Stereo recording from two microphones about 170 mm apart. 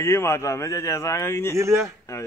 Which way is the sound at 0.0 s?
15° left (ahead or behind).